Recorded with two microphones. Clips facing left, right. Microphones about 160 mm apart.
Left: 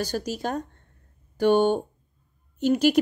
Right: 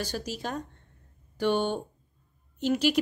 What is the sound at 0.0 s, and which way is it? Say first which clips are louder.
A woman's voice: left 5 dB; 45° left (ahead or behind).